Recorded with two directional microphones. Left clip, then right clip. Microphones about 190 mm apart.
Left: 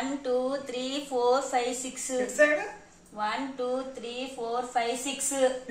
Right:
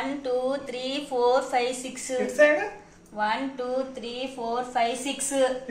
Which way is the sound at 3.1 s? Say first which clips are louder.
Right 4 dB; 20° left (ahead or behind).